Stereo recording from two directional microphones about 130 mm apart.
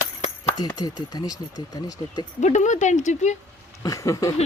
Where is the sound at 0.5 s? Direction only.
30° left (ahead or behind).